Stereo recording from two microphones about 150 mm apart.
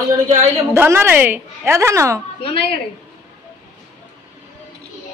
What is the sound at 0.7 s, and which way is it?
A woman's voice, 15° right (ahead or behind).